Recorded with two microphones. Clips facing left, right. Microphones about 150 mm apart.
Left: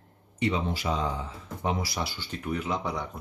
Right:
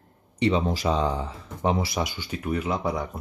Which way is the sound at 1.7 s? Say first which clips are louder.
Right 5 dB; 25° right (ahead or behind).